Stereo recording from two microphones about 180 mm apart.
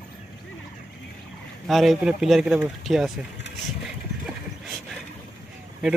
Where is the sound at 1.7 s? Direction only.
Centre (ahead or behind).